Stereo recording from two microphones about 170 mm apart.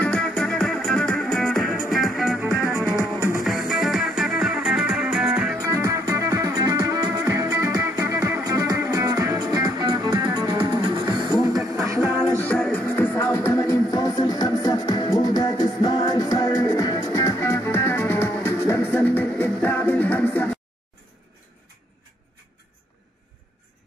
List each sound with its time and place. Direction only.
0.0 s music: 5° left (ahead or behind)
3.4 s music: centre (ahead or behind)
5.7 s music: 20° right (ahead or behind)
11.8 s music: 15° right (ahead or behind)
12.4 s music: 5° left (ahead or behind)